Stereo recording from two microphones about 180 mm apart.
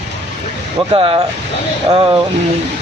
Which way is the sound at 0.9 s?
30° right (ahead or behind).